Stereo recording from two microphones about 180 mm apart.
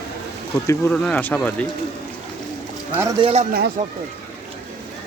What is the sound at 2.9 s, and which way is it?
Speech, 15° right (ahead or behind).